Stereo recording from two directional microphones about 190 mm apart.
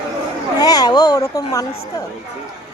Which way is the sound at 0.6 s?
20° left (ahead or behind).